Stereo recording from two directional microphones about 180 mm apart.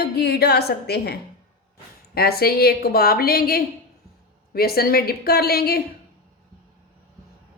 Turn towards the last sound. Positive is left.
turn(degrees=60)  # may be behind; listen again after turning